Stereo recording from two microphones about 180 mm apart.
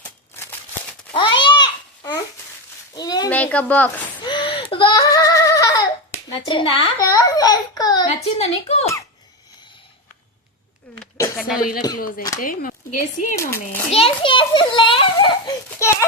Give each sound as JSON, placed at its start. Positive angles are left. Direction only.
{"t": 1.1, "sound": "babbling", "side_deg": 25}
{"t": 2.9, "sound": "a sound", "side_deg": 25}
{"t": 3.2, "sound": "speech", "side_deg": 10}
{"t": 4.3, "sound": "giggle", "side_deg": 25}
{"t": 8.1, "sound": "speech", "side_deg": 35}
{"t": 10.9, "sound": "speech", "side_deg": 5}
{"t": 11.9, "sound": "speech", "side_deg": 50}
{"t": 13.3, "sound": "speech", "side_deg": 15}
{"t": 13.9, "sound": "a child's voice", "side_deg": 30}
{"t": 15.8, "sound": "a sound", "side_deg": 15}